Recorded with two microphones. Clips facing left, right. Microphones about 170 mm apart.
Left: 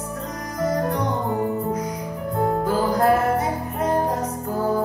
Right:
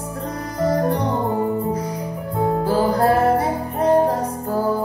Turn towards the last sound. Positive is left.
turn(degrees=-30)  # may be behind; listen again after turning